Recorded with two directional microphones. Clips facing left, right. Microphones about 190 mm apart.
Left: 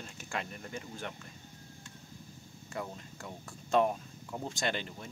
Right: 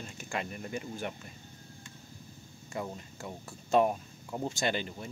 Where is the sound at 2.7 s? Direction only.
Centre (ahead or behind).